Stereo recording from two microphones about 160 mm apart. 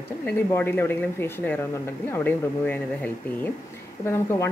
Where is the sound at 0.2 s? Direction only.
10° left (ahead or behind).